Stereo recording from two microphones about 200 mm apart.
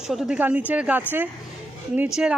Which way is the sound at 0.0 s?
Centre (ahead or behind).